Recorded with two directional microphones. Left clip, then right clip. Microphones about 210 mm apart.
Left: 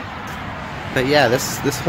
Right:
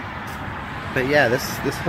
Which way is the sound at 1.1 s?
20° left (ahead or behind).